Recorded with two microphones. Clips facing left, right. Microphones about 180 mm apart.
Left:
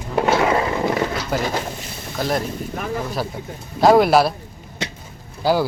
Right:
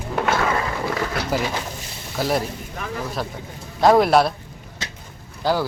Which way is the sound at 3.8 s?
Centre (ahead or behind).